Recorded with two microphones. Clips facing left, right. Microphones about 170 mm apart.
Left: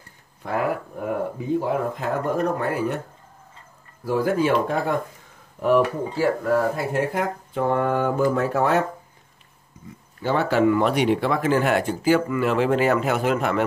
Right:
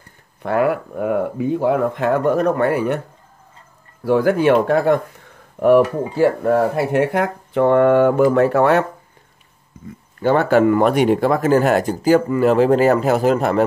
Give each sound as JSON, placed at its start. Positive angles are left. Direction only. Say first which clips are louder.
{"t": 0.4, "sound": "speech", "louder": "right 7 dB", "side_deg": -65}
{"t": 4.0, "sound": "speech", "louder": "right 6 dB", "side_deg": -70}
{"t": 5.6, "sound": "speech", "louder": "right 6 dB", "side_deg": -55}
{"t": 10.2, "sound": "speech", "louder": "right 5 dB", "side_deg": -55}